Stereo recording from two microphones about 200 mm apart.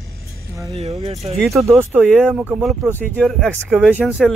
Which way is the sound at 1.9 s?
Centre (ahead or behind).